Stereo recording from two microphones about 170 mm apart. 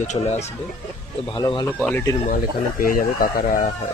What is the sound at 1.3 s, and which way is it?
Speech, 25° left (ahead or behind).